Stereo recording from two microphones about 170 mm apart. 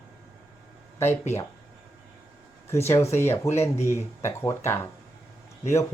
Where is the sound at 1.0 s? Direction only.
15° left (ahead or behind).